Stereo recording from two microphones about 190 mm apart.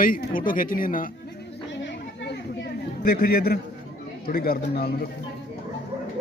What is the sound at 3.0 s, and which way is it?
Speech, 50° left (ahead or behind).